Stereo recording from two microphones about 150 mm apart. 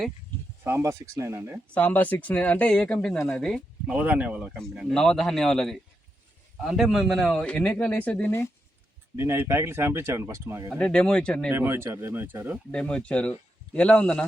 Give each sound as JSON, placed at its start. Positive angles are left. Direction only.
{"t": 0.6, "sound": "speech", "side_deg": -20}
{"t": 1.7, "sound": "a man's voice", "side_deg": 10}
{"t": 3.8, "sound": "a man's voice", "side_deg": -10}
{"t": 9.1, "sound": "speech", "side_deg": -15}
{"t": 10.8, "sound": "speech", "side_deg": 5}
{"t": 11.5, "sound": "speech", "side_deg": -15}
{"t": 12.7, "sound": "a man's voice", "side_deg": 5}